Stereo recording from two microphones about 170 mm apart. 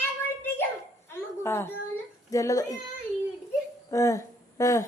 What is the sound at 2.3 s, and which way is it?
Speech, 20° left (ahead or behind).